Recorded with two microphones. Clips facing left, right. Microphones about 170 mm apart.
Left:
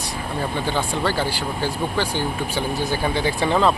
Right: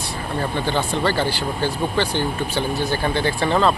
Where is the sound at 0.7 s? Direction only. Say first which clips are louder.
Right 2 dB; 5° left (ahead or behind).